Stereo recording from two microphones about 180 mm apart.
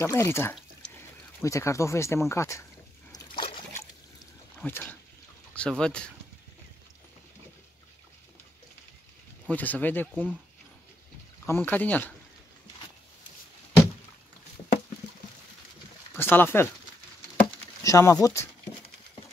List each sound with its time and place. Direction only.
0.0 s speech: 15° left (ahead or behind)
3.1 s a sound: 25° left (ahead or behind)
4.6 s speech: 10° left (ahead or behind)
9.5 s speech: 10° left (ahead or behind)
11.4 s speech: 10° left (ahead or behind)
16.2 s speech: 10° left (ahead or behind)
17.8 s speech: 20° left (ahead or behind)